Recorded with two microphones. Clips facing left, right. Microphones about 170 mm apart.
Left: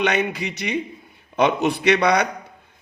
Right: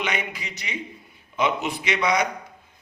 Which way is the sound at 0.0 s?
70° left (ahead or behind).